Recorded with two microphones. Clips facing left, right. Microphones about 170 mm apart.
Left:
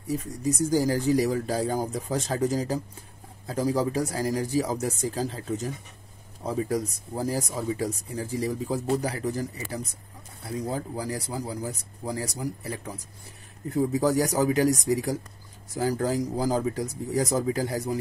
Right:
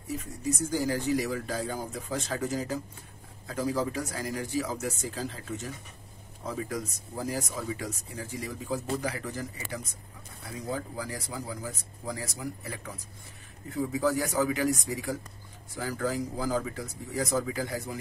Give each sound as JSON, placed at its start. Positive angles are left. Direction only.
{"t": 0.1, "sound": "speech", "side_deg": 35}